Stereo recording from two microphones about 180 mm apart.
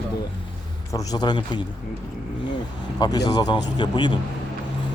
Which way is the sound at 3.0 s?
20° left (ahead or behind).